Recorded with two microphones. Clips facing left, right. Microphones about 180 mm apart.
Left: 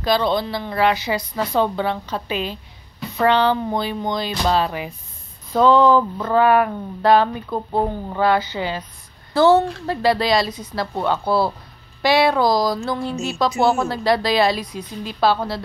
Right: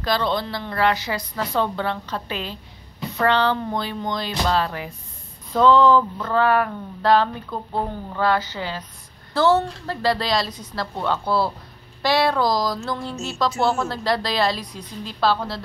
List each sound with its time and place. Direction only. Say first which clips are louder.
0.0 s speech: left 4 dB; 15° left (ahead or behind)